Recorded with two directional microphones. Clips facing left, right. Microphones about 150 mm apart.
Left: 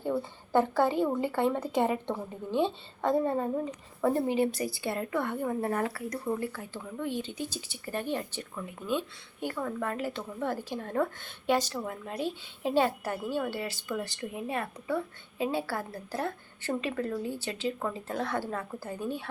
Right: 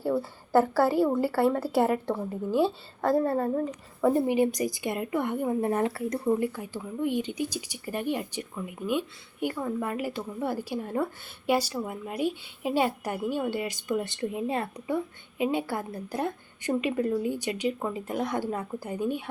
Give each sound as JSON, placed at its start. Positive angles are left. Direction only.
{"t": 0.0, "sound": "speech", "side_deg": -5}
{"t": 4.0, "sound": "speech", "side_deg": -15}